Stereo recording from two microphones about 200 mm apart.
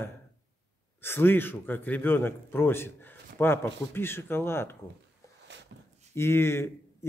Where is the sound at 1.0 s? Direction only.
10° left (ahead or behind).